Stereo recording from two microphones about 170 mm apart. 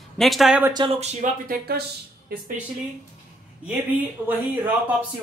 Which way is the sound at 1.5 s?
65° right (ahead or behind).